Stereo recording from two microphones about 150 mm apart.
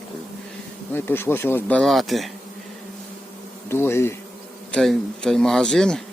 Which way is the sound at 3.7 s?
15° left (ahead or behind).